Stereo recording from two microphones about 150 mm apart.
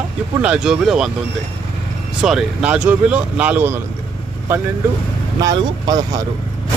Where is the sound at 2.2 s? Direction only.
5° right (ahead or behind).